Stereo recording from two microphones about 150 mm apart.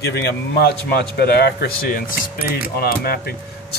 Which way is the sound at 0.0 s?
90° left.